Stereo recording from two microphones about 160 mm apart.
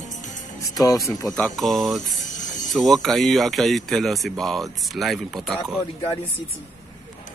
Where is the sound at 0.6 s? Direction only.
20° left (ahead or behind).